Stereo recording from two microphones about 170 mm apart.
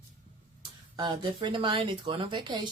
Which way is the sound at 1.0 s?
30° right (ahead or behind).